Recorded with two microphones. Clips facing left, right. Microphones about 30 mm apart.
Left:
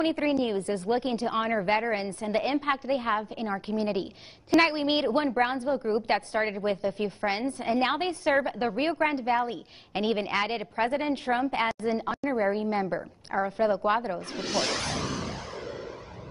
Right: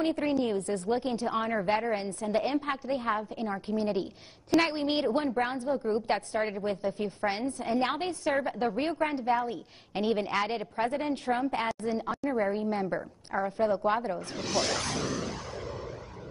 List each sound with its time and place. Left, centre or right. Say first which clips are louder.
0.2 s a woman's voice: left 2 dB; left
2.6 s a woman's voice: left 3 dB; left
12.1 s a woman's voice: left 1 dB; centre
14.3 s a woman's voice: left 1 dB; left